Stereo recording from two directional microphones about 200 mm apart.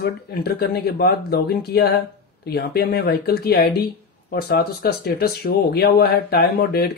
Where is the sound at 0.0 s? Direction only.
50° left (ahead or behind).